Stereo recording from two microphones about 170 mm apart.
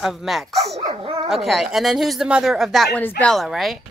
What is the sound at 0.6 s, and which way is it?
Dog, 40° right (ahead or behind).